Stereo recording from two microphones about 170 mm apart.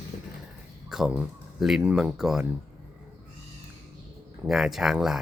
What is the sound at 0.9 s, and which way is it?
Speech, centre (ahead or behind).